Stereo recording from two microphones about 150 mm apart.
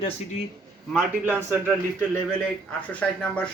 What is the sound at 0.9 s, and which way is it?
Speech, 10° right (ahead or behind).